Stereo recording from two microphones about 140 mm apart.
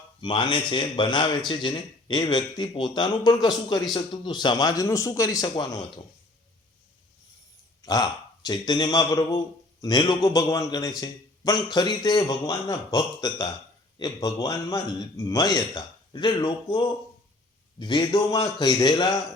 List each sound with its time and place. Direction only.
0.2 s a man's voice: 35° left (ahead or behind)
7.8 s a man's voice: 30° left (ahead or behind)